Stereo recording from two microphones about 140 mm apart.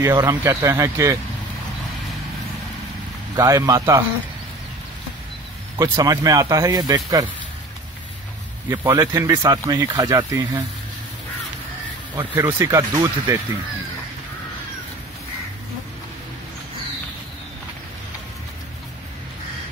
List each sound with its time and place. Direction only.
0.0 s speech: 20° right (ahead or behind)
3.3 s speech: 25° right (ahead or behind)
5.8 s speech: 25° right (ahead or behind)
8.6 s speech: 30° right (ahead or behind)
12.2 s speech: 15° right (ahead or behind)